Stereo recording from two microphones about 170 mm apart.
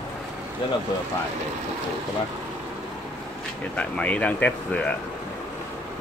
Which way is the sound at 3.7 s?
10° left (ahead or behind).